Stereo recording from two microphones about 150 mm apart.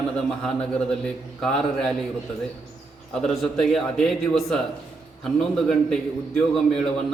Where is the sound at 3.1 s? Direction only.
Centre (ahead or behind).